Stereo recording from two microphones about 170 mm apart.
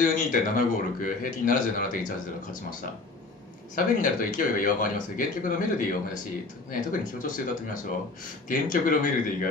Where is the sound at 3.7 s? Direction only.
50° left (ahead or behind).